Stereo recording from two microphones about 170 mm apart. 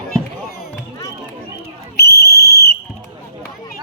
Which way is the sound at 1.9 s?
70° left (ahead or behind).